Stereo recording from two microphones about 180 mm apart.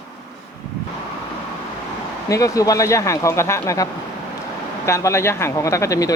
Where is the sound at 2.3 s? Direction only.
20° left (ahead or behind).